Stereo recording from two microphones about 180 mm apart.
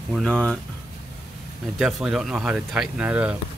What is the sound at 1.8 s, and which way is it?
Speech, 5° right (ahead or behind).